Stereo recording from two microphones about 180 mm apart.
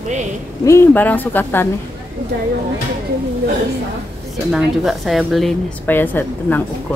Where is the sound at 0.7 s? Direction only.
10° left (ahead or behind).